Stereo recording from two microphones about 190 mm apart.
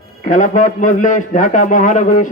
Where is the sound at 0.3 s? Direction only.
40° left (ahead or behind).